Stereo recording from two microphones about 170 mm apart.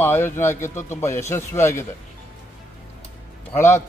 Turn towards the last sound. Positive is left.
turn(degrees=15)  # may be behind; listen again after turning